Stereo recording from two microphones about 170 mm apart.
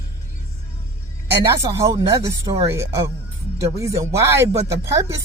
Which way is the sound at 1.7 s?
20° right (ahead or behind).